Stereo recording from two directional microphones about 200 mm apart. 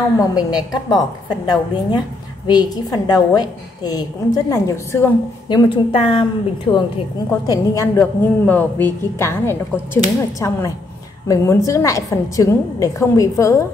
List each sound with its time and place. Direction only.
0.2 s a woman's voice: 20° left (ahead or behind)
5.6 s a woman's voice: 25° left (ahead or behind)